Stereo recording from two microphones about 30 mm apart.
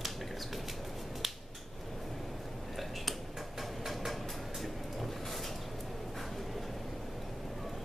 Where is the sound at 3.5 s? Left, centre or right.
Centre.